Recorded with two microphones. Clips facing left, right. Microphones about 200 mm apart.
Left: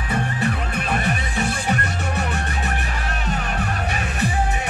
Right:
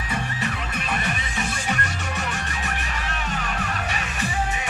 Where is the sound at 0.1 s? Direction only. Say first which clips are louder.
Left 6 dB; 55° left (ahead or behind).